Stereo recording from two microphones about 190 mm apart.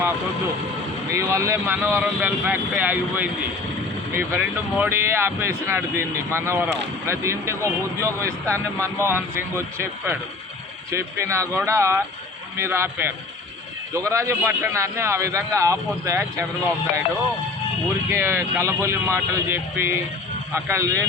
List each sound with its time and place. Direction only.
1.1 s speech: 15° right (ahead or behind)
18.1 s speech: 15° right (ahead or behind)